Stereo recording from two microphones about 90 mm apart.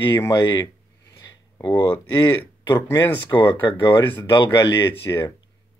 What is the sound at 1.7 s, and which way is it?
Speech, 25° left (ahead or behind).